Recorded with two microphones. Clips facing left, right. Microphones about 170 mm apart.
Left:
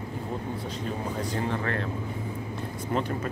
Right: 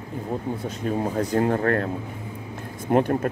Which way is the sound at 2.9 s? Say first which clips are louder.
Right 9 dB; 55° right (ahead or behind).